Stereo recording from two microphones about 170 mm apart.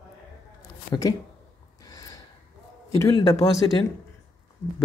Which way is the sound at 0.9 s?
20° left (ahead or behind).